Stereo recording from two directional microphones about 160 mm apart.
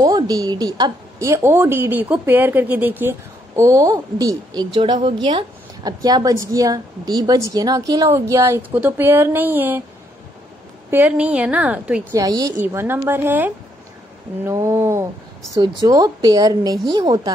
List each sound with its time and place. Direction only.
0.0 s a woman's voice: 25° right (ahead or behind)
10.9 s speech: 10° right (ahead or behind)
12.1 s a woman's voice: 25° right (ahead or behind)